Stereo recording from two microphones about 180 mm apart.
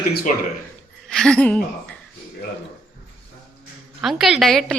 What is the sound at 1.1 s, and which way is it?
Speech, 5° left (ahead or behind).